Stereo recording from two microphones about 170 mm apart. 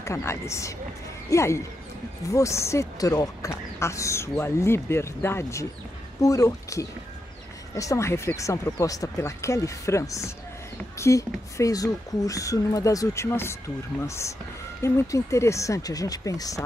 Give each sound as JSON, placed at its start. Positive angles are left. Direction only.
{"t": 0.0, "sound": "speech", "side_deg": 15}